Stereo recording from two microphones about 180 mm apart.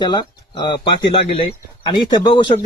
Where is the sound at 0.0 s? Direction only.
25° left (ahead or behind).